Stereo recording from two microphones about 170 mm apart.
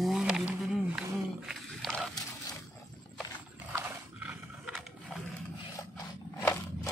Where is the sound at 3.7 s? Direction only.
10° right (ahead or behind).